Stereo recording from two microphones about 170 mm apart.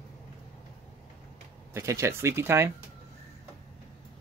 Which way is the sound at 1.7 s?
15° right (ahead or behind).